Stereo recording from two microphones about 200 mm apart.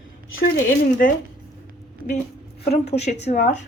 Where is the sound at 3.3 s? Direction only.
50° left (ahead or behind).